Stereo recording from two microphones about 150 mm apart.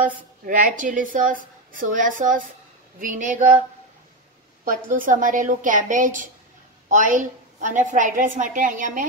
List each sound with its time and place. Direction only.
0.0 s a woman's voice: 65° right (ahead or behind)
4.6 s a woman's voice: 65° right (ahead or behind)